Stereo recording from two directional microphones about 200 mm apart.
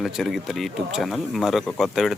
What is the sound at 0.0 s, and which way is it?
Speech, centre (ahead or behind).